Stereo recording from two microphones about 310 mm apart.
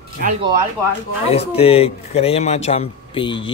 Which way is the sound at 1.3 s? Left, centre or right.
Centre.